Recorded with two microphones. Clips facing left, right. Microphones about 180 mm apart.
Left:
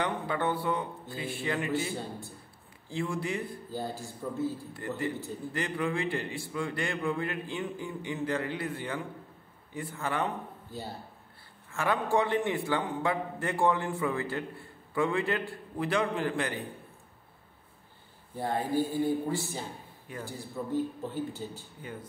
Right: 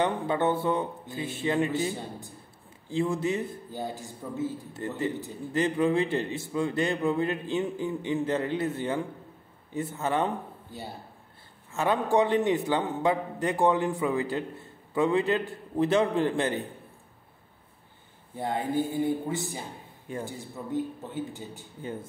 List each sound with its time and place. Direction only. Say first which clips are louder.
0.0 s a man's voice: right 5 dB; 25° right (ahead or behind)
11.7 s a man's voice: right 3 dB; 20° right (ahead or behind)
18.4 s a man's voice: right 1 dB; 20° right (ahead or behind)